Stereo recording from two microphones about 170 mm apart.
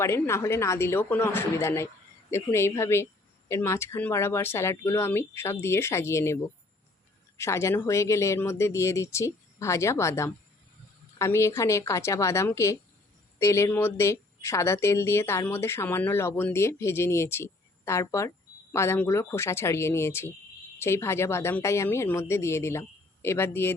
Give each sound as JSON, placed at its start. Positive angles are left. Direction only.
{"t": 0.0, "sound": "speech", "side_deg": 15}